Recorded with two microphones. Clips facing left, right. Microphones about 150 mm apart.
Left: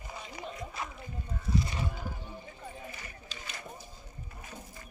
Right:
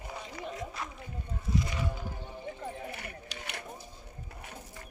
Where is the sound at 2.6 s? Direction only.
65° right (ahead or behind).